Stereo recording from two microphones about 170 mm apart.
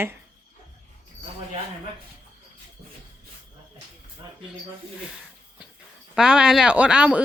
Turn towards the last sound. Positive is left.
turn(degrees=-5)  # may be behind; listen again after turning